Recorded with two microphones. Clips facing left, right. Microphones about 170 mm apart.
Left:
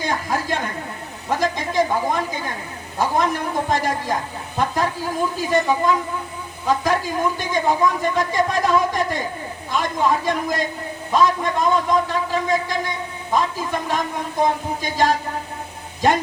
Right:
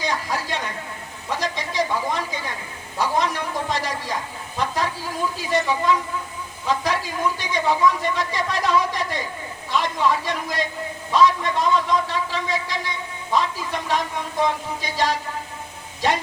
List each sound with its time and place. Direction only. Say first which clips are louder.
0.0 s a sound: left 2 dB; 50° left (ahead or behind)
1.3 s a woman's voice: left 5 dB; 50° left (ahead or behind)
5.4 s speech: left 3 dB; 45° left (ahead or behind)